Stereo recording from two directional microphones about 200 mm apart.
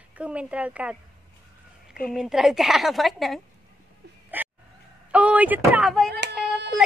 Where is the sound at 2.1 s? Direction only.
Centre (ahead or behind).